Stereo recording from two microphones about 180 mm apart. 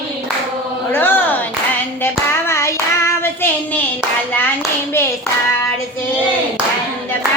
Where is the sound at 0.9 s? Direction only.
10° left (ahead or behind).